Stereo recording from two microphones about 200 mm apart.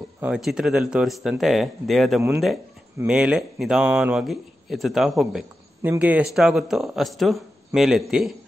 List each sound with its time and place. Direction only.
0.2 s speech: 5° right (ahead or behind)